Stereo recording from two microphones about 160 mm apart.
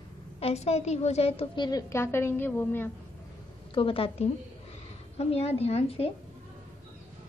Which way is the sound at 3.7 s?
35° left (ahead or behind).